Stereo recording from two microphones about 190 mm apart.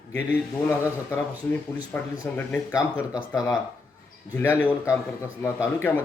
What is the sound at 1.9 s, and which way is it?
Speech, 10° left (ahead or behind).